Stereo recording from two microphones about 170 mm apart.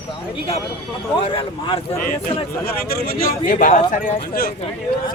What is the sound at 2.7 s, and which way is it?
Speech, 60° left (ahead or behind).